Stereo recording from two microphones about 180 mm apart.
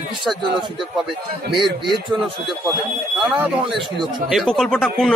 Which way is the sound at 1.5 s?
25° right (ahead or behind).